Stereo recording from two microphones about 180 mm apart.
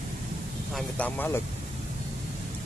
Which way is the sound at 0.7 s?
10° left (ahead or behind).